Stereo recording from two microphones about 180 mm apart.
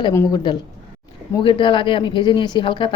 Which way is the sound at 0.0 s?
20° left (ahead or behind).